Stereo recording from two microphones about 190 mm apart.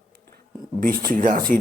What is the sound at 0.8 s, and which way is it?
Speech, 50° right (ahead or behind).